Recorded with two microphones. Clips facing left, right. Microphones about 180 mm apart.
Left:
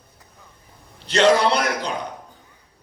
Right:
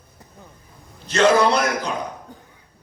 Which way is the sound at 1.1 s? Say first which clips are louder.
Even; 30° left (ahead or behind).